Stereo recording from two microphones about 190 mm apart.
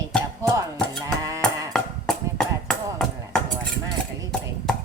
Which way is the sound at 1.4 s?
Centre (ahead or behind).